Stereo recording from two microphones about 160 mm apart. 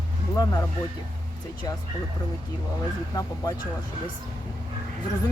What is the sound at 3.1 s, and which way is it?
Speech, 25° left (ahead or behind).